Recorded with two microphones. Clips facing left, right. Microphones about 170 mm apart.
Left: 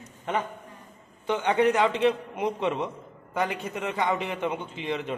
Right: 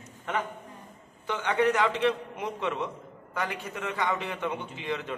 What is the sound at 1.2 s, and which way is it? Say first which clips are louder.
A man's voice: left 3 dB; 20° left (ahead or behind).